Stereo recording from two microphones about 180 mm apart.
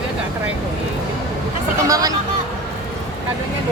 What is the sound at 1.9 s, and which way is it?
Speech, 20° right (ahead or behind).